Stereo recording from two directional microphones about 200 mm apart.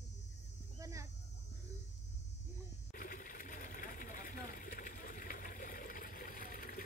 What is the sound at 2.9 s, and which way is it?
Sewing machine, 45° left (ahead or behind).